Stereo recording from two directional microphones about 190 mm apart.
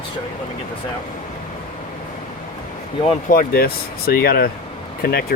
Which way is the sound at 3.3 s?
50° left (ahead or behind).